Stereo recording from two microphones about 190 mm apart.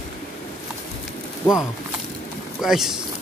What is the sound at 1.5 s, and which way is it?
Speech, centre (ahead or behind).